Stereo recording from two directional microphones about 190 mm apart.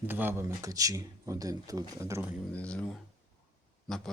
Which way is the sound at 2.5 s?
5° left (ahead or behind).